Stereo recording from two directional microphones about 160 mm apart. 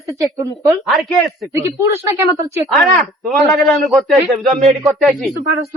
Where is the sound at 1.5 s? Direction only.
20° right (ahead or behind).